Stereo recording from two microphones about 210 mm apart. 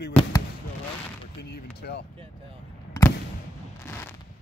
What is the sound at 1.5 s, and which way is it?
Speech, 50° left (ahead or behind).